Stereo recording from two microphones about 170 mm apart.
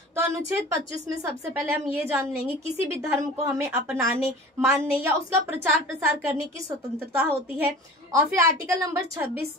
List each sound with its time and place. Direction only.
0.1 s a woman's voice: 15° right (ahead or behind)
7.2 s a woman's voice: 10° right (ahead or behind)